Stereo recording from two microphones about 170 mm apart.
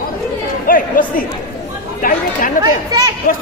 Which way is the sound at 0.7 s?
55° left (ahead or behind).